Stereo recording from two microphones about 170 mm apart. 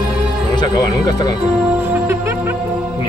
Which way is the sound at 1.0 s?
25° left (ahead or behind).